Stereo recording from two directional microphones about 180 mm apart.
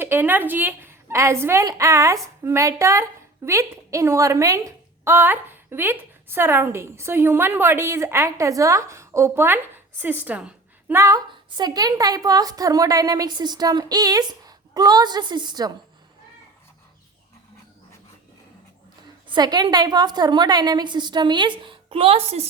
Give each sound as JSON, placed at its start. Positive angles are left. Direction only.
{"t": 0.0, "sound": "a woman's voice", "side_deg": -10}
{"t": 19.3, "sound": "a woman's voice", "side_deg": -20}